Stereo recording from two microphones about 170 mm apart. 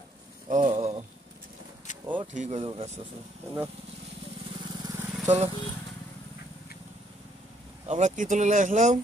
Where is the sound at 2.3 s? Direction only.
45° right (ahead or behind).